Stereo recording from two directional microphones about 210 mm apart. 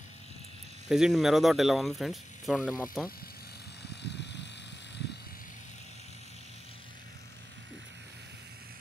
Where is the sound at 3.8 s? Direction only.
55° left (ahead or behind).